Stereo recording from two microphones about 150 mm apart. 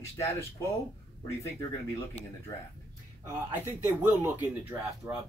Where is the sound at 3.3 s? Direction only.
15° right (ahead or behind).